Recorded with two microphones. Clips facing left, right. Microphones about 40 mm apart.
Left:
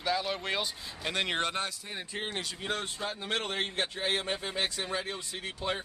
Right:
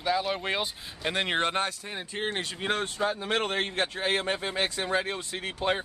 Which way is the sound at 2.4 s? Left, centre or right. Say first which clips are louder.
Right 5 dB; right.